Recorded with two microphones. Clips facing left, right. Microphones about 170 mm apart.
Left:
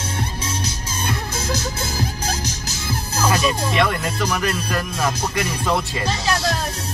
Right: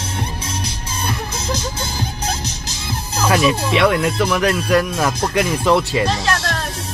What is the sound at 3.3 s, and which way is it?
Speech, 75° right (ahead or behind).